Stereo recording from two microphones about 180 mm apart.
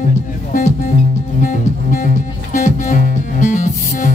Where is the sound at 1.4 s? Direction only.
45° left (ahead or behind).